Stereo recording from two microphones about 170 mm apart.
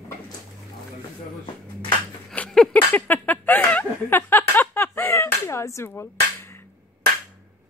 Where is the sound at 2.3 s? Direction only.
5° left (ahead or behind).